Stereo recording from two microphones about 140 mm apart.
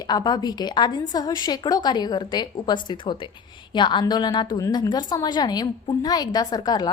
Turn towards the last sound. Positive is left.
turn(degrees=30)  # may be behind; listen again after turning